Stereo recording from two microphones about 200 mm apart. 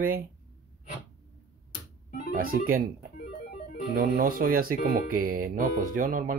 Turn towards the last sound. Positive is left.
turn(degrees=-45)  # may be behind; listen again after turning